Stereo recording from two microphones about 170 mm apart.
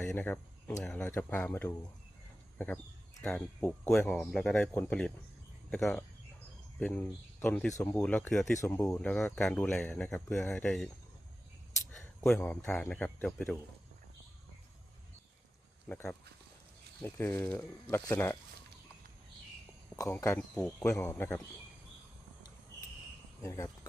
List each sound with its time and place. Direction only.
0.0 s speech: 10° left (ahead or behind)
7.9 s speech: 5° left (ahead or behind)
8.5 s speech: 15° left (ahead or behind)
11.9 s speech: 5° left (ahead or behind)
15.9 s speech: 5° left (ahead or behind)
20.0 s speech: 15° left (ahead or behind)
23.4 s speech: 20° left (ahead or behind)